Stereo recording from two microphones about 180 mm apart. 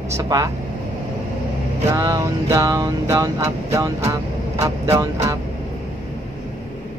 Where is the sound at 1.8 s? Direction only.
20° right (ahead or behind).